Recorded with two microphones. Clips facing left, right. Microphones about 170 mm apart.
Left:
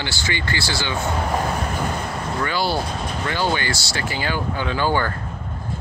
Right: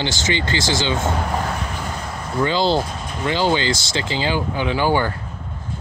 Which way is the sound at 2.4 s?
20° right (ahead or behind).